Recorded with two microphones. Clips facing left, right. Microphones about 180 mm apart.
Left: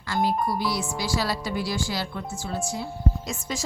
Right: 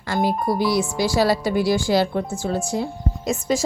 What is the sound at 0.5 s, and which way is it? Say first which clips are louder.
A woman's voice: right 7 dB; 15° right (ahead or behind).